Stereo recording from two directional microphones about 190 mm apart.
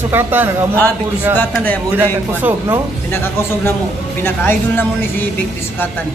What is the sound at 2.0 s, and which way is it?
Speech, 10° right (ahead or behind).